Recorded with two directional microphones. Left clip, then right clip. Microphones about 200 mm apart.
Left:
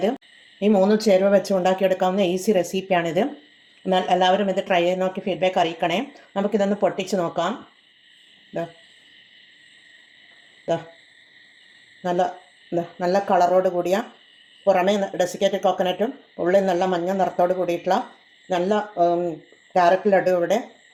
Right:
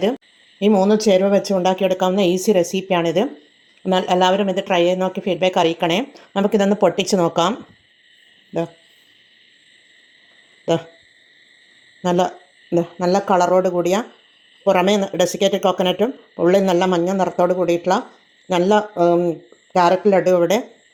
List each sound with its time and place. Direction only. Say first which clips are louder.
0.6 s speech: right 3 dB; 30° right (ahead or behind)
10.7 s speech: right 5 dB; 40° right (ahead or behind)
12.0 s speech: right 4 dB; 40° right (ahead or behind)